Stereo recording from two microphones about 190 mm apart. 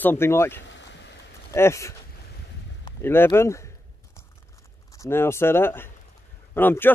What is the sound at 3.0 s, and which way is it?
Speech, 10° left (ahead or behind).